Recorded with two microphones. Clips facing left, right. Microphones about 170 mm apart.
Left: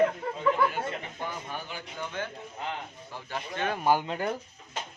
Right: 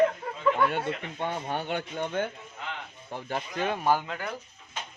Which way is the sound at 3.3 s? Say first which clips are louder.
Right 2 dB; 35° right (ahead or behind).